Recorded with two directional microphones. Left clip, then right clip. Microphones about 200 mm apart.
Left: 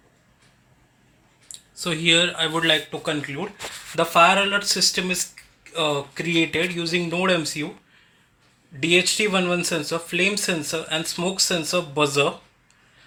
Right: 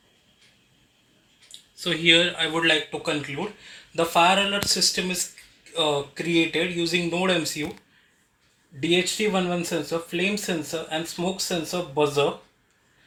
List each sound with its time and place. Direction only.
1.8 s speech: 65° left (ahead or behind)
8.9 s speech: 55° left (ahead or behind)